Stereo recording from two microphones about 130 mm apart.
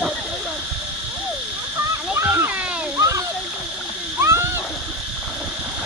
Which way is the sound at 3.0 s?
20° right (ahead or behind).